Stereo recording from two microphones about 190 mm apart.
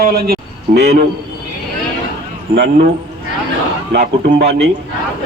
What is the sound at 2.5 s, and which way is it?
Speech, 60° right (ahead or behind).